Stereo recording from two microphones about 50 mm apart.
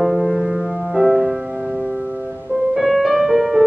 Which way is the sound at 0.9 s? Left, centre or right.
Right.